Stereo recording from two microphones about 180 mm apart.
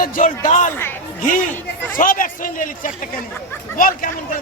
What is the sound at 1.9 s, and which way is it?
A woman's voice, 50° left (ahead or behind).